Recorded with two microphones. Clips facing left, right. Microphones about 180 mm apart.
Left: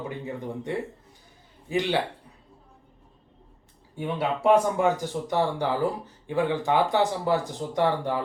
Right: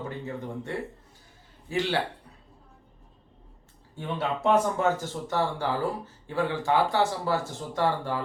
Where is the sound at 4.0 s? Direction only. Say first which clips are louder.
Left 3 dB; 15° left (ahead or behind).